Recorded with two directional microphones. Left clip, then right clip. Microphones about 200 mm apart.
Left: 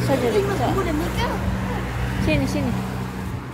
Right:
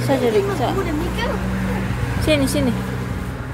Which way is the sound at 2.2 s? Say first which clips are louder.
Right 5 dB; 15° right (ahead or behind).